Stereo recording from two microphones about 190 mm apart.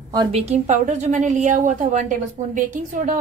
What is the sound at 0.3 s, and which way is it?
A woman's voice, 35° right (ahead or behind).